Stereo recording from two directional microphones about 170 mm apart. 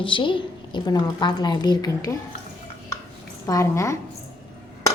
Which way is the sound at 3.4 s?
20° left (ahead or behind).